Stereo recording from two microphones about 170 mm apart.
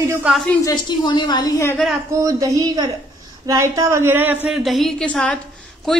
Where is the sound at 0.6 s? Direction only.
25° left (ahead or behind).